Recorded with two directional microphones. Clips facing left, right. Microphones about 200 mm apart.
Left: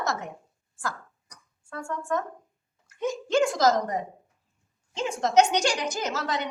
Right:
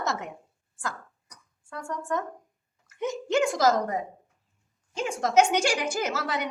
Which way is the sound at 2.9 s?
20° right (ahead or behind).